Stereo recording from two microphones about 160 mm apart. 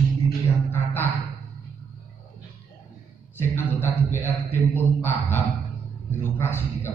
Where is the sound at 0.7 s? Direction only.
10° left (ahead or behind).